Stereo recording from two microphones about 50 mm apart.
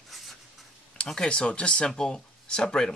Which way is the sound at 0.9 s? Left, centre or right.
Centre.